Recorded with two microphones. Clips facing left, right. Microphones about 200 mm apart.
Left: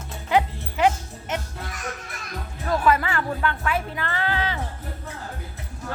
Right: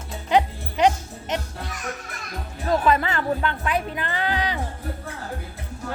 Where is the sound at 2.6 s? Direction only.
20° right (ahead or behind).